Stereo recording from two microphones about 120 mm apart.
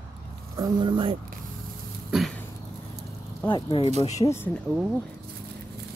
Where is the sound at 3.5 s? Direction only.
50° left (ahead or behind).